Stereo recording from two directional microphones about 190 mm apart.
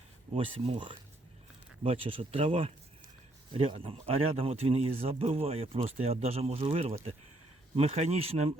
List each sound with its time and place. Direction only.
0.3 s speech: 30° right (ahead or behind)